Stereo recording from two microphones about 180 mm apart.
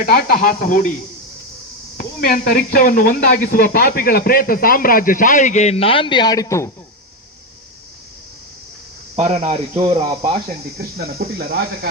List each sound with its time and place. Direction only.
0.0 s speech: 55° left (ahead or behind)
2.0 s speech: 50° left (ahead or behind); by 6.7 s 20° left (ahead or behind)
9.1 s speech: 35° right (ahead or behind)
10.8 s speech: 60° right (ahead or behind)